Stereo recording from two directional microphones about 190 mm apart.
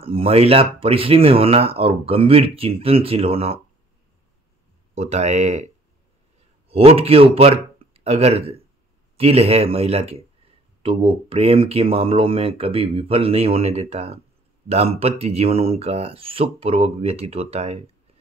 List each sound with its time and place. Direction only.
0.0 s speech: 30° right (ahead or behind)
4.9 s speech: 35° right (ahead or behind)
6.7 s speech: 30° right (ahead or behind)